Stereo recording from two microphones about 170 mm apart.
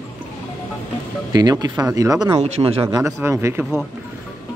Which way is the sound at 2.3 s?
40° right (ahead or behind).